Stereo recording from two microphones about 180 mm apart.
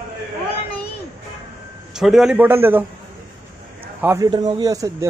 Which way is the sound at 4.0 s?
15° right (ahead or behind).